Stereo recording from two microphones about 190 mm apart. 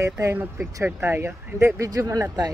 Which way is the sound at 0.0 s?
15° right (ahead or behind).